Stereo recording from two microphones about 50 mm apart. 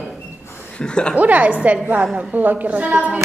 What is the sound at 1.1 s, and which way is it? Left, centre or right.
A woman's voice, right.